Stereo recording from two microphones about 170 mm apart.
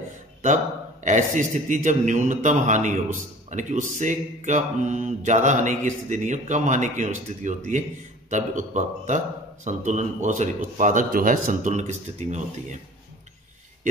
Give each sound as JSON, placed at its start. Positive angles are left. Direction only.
{"t": 1.0, "sound": "a man's voice", "side_deg": -45}